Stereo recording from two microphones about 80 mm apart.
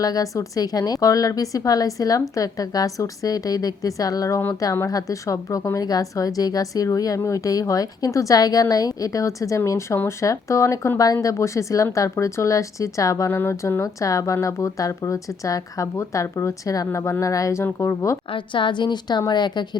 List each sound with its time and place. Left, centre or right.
0.0 s a woman's voice: left
13.3 s a woman's voice: left
18.3 s a woman's voice: left